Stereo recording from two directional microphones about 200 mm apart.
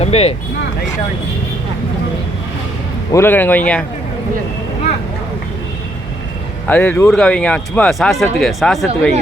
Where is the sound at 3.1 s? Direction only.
10° left (ahead or behind).